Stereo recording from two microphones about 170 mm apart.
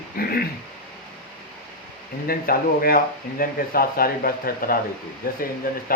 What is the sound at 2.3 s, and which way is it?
Speech, 60° left (ahead or behind).